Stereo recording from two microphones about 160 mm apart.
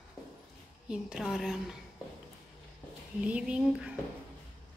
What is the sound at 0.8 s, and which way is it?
Speech, 5° right (ahead or behind).